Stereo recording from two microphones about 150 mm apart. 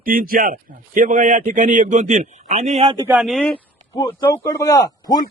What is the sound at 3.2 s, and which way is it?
Speech, centre (ahead or behind).